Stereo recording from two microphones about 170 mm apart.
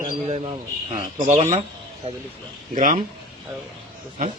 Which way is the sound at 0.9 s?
50° right (ahead or behind).